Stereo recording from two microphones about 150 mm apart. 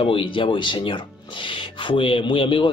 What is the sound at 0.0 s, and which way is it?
Speech, 35° left (ahead or behind).